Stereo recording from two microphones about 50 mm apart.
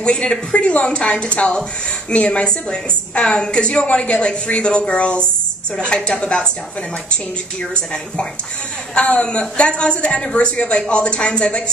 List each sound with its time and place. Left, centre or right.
0.0 s speech: centre
7.7 s speech: centre